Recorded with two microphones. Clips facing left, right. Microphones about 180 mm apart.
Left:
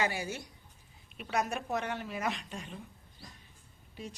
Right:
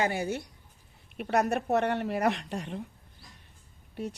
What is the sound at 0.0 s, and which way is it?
Speech, 55° right (ahead or behind).